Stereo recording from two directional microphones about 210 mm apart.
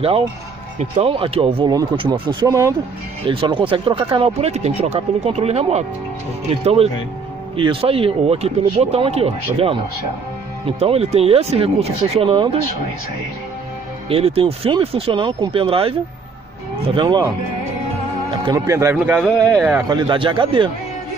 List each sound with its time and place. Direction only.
0.9 s speech: 25° right (ahead or behind)
10.8 s speech: 30° right (ahead or behind)
14.0 s speech: 25° right (ahead or behind)
18.3 s a man's voice: 20° right (ahead or behind)
19.1 s speech: centre (ahead or behind)
19.9 s speech: 25° right (ahead or behind)